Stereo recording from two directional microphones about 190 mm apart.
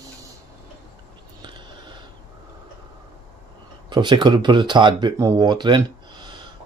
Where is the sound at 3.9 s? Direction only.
25° right (ahead or behind).